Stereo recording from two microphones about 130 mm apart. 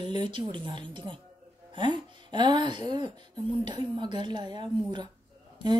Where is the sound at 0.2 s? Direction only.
40° right (ahead or behind).